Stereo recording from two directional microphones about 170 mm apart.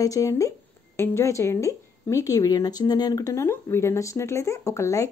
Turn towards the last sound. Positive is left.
turn(degrees=15)  # may be behind; listen again after turning